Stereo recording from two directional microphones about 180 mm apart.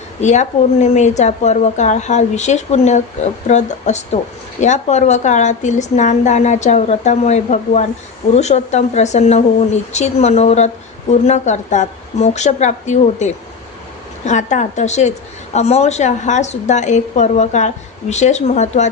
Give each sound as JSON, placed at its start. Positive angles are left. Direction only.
{"t": 0.2, "sound": "a woman's voice", "side_deg": 40}